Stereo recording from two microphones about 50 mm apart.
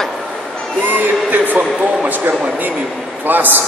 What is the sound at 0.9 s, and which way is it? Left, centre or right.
Speech, right.